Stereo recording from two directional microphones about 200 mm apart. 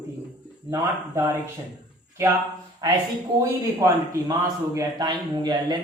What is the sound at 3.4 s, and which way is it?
Speech, 15° right (ahead or behind).